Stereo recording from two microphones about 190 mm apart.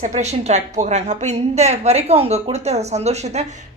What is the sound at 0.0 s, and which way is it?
Speech, 35° right (ahead or behind).